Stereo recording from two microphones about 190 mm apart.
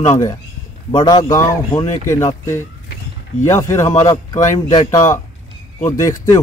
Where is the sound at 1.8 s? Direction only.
35° left (ahead or behind).